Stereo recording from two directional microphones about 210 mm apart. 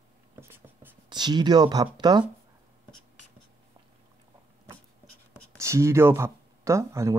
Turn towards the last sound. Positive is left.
turn(degrees=-15)  # may be behind; listen again after turning